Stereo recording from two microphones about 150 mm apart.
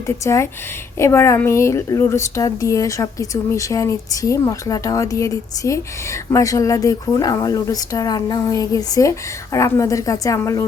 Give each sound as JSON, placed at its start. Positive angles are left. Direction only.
{"t": 0.9, "sound": "speech", "side_deg": 20}